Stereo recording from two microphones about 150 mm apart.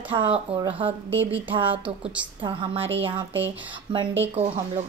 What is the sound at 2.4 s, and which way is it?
Speech, 35° right (ahead or behind).